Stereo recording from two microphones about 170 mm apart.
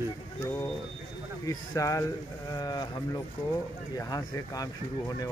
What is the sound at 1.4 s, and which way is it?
Speech, 20° left (ahead or behind).